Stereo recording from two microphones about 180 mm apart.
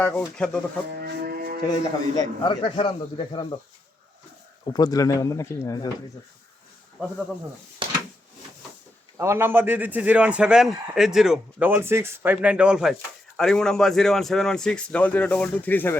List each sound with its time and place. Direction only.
0.0 s speech: 10° left (ahead or behind)
0.9 s livestock: 60° right (ahead or behind)
1.8 s a man's voice: 25° left (ahead or behind)
4.6 s a man's voice: 20° left (ahead or behind)
9.1 s a man's voice: 15° right (ahead or behind); by 16.0 s 10° left (ahead or behind)